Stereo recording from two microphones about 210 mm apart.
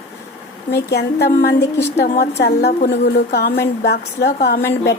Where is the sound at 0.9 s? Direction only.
50° left (ahead or behind).